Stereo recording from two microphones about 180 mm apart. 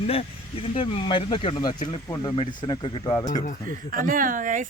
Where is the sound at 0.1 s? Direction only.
35° left (ahead or behind).